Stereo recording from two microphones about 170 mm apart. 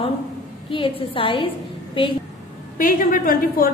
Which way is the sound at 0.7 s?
30° left (ahead or behind).